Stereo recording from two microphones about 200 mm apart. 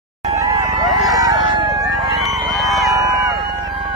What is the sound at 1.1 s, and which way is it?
Crowing, 20° right (ahead or behind).